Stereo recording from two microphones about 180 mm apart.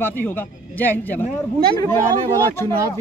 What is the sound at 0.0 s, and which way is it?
Speech, 10° left (ahead or behind).